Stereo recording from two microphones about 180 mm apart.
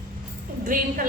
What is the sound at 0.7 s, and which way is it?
Speech, 50° right (ahead or behind).